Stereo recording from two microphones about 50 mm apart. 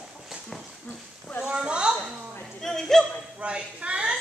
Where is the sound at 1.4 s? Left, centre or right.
Centre.